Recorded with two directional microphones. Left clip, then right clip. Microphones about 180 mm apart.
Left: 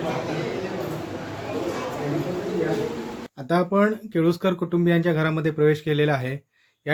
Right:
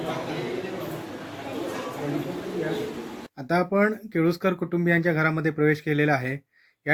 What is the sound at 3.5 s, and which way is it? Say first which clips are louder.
Speech: left 2 dB; centre (ahead or behind).